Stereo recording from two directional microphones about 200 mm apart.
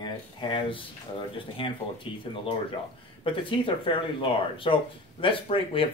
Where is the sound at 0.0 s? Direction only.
25° left (ahead or behind).